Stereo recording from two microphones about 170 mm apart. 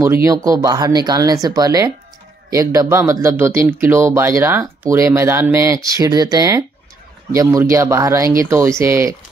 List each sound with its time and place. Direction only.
0.0 s speech: 15° right (ahead or behind)